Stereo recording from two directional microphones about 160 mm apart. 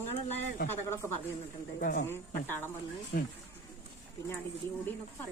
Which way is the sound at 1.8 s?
70° left (ahead or behind).